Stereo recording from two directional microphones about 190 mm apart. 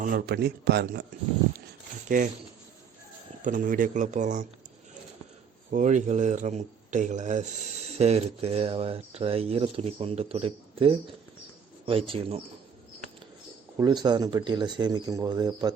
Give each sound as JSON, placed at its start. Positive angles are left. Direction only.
{"t": 0.0, "sound": "a man's voice", "side_deg": -50}
{"t": 2.0, "sound": "speech", "side_deg": -45}
{"t": 3.4, "sound": "speech", "side_deg": -45}
{"t": 5.7, "sound": "speech", "side_deg": -40}
{"t": 13.7, "sound": "speech", "side_deg": -20}